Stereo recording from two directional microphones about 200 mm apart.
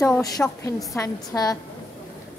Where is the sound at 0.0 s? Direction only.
15° left (ahead or behind).